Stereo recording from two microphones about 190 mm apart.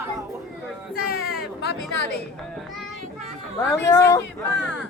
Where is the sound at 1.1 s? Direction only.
55° left (ahead or behind).